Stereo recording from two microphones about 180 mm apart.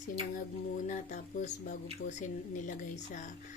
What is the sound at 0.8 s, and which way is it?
Speech, 45° left (ahead or behind).